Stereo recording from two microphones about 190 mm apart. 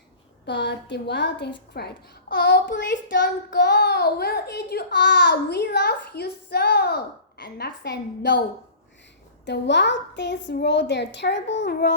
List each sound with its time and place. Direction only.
0.4 s child singing: 65° left (ahead or behind)
9.5 s child singing: 65° left (ahead or behind)